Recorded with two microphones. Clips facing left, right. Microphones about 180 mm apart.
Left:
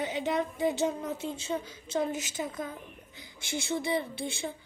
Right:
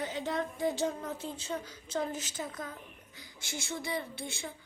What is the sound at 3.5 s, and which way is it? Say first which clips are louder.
Speech: left 6 dB; 20° left (ahead or behind).